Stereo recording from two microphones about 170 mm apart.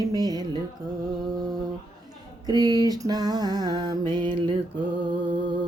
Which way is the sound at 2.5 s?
20° right (ahead or behind).